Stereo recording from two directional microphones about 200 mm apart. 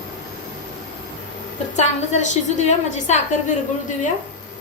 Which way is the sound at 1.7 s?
35° left (ahead or behind).